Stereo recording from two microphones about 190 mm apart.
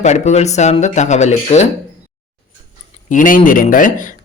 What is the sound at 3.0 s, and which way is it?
Speech, 45° left (ahead or behind).